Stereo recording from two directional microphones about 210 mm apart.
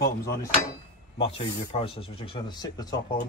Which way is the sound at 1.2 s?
25° left (ahead or behind).